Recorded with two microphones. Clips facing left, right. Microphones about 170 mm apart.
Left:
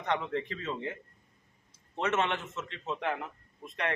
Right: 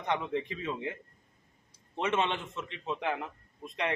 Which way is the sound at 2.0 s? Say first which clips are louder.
Even; 15° right (ahead or behind).